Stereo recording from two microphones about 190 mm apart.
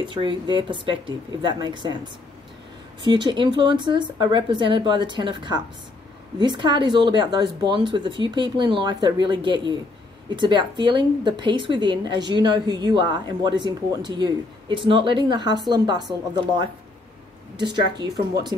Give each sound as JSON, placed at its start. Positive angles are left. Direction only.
{"t": 0.0, "sound": "speech", "side_deg": -25}
{"t": 3.0, "sound": "speech", "side_deg": -25}